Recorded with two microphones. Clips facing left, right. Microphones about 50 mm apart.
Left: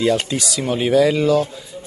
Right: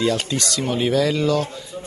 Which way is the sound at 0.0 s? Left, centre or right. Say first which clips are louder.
Left 3 dB; centre.